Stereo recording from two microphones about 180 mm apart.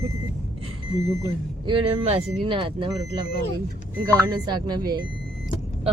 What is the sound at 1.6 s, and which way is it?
Speech, 30° right (ahead or behind).